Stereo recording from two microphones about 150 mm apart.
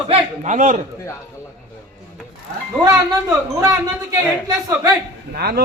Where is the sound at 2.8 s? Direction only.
20° right (ahead or behind).